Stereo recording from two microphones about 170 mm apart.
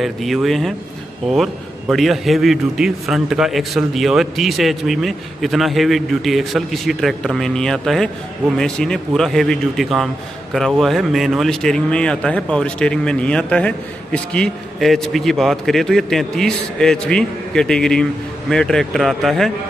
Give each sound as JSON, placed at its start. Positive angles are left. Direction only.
{"t": 0.0, "sound": "speech", "side_deg": 0}